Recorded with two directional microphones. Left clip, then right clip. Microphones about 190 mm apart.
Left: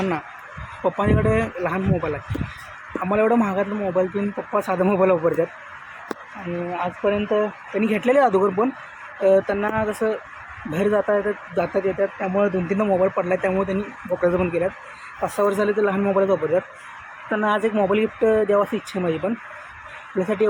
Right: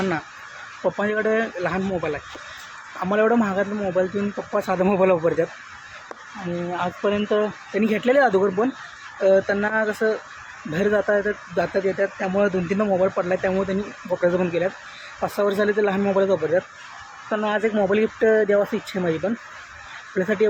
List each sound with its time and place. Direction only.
0.8 s speech: 5° left (ahead or behind)
6.7 s speech: 20° right (ahead or behind)
7.8 s speech: centre (ahead or behind)
17.2 s speech: 25° left (ahead or behind)
17.5 s speech: centre (ahead or behind)